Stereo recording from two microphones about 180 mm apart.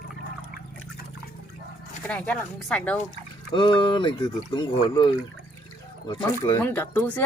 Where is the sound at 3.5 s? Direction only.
25° left (ahead or behind).